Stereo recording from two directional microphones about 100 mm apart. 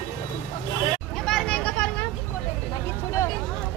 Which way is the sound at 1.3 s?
10° left (ahead or behind).